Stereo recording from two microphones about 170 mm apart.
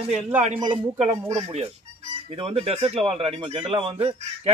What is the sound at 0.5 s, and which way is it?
Speech, 40° right (ahead or behind).